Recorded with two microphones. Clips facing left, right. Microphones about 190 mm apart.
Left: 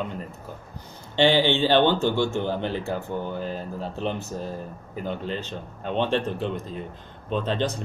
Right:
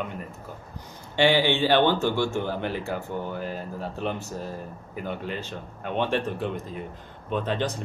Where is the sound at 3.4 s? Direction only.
10° right (ahead or behind).